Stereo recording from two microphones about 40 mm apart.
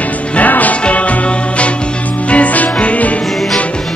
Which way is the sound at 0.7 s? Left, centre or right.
Left.